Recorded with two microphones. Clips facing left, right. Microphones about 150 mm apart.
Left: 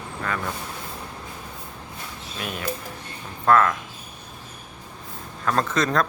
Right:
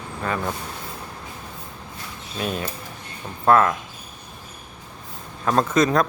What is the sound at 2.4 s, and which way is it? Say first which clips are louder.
Speech: right 3 dB; 30° right (ahead or behind).